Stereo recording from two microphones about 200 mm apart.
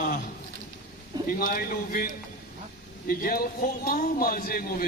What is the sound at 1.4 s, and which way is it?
Speech, 45° left (ahead or behind).